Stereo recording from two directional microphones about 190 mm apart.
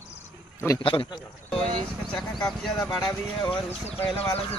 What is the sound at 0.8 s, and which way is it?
Speech, 25° left (ahead or behind).